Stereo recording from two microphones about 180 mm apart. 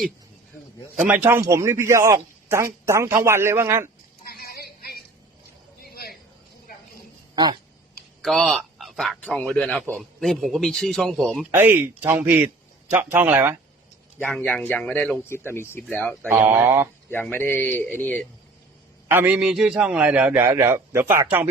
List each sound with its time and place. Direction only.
1.0 s a man's voice: 10° right (ahead or behind)
4.3 s a sound: 55° left (ahead or behind)
8.2 s a man's voice: centre (ahead or behind)
11.5 s a man's voice: 10° right (ahead or behind)
14.2 s speech: 5° left (ahead or behind)
16.3 s a man's voice: 10° right (ahead or behind)
17.1 s speech: 10° left (ahead or behind)
19.0 s a man's voice: 10° right (ahead or behind)